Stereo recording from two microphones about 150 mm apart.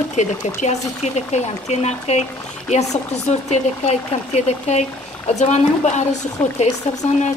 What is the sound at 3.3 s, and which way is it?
Speech, 50° left (ahead or behind).